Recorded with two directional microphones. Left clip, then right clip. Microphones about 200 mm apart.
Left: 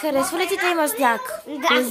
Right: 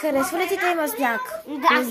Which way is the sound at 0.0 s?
5° left (ahead or behind).